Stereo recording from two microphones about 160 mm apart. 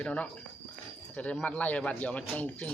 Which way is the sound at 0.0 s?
10° left (ahead or behind).